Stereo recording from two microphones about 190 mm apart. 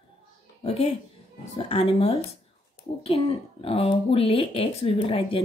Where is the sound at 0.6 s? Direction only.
30° left (ahead or behind).